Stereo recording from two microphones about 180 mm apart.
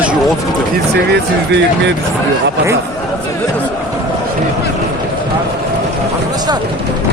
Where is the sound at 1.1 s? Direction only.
75° right (ahead or behind).